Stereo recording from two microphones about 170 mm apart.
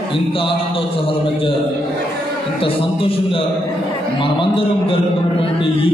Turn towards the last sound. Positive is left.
turn(degrees=30)  # may be behind; listen again after turning